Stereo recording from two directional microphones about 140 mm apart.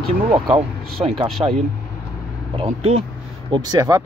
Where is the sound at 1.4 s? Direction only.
25° right (ahead or behind).